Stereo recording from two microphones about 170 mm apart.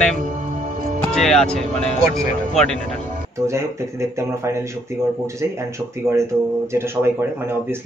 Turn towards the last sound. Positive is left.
turn(degrees=-15)  # may be behind; listen again after turning